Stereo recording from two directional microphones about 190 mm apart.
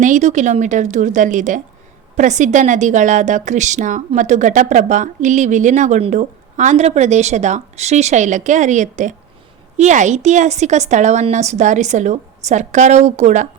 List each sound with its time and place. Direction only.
0.0 s a woman's voice: 40° right (ahead or behind)